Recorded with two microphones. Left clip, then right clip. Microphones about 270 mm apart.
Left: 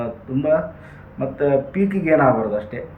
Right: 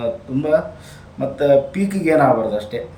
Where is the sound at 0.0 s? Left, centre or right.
Centre.